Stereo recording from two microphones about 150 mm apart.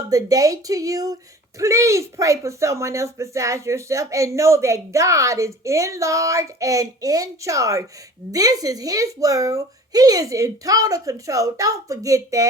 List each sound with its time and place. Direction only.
0.1 s speech: 25° right (ahead or behind)